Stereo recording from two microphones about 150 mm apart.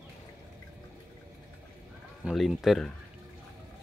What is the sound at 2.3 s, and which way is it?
Speech, centre (ahead or behind).